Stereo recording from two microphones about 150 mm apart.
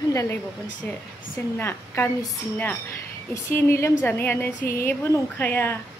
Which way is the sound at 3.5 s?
15° left (ahead or behind).